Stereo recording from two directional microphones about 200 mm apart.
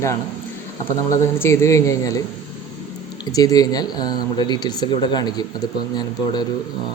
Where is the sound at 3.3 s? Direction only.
15° left (ahead or behind).